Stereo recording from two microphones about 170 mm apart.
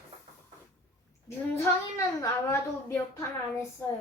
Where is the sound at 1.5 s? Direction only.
15° left (ahead or behind).